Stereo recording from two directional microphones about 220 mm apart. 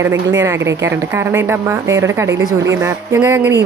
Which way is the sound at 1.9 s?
15° right (ahead or behind).